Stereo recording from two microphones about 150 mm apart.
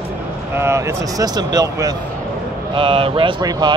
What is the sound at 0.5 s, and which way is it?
Speech, 15° right (ahead or behind).